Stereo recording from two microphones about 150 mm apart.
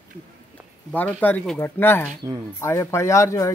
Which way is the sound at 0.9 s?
10° left (ahead or behind).